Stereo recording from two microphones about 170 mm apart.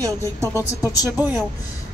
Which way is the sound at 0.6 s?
20° left (ahead or behind).